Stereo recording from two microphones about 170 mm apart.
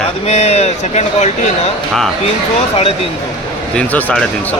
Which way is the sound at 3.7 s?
10° left (ahead or behind).